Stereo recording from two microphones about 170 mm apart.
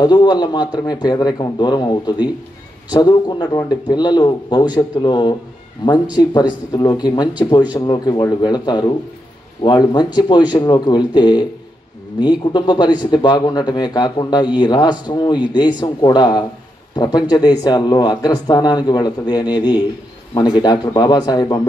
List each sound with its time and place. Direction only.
0.0 s speech: 25° left (ahead or behind)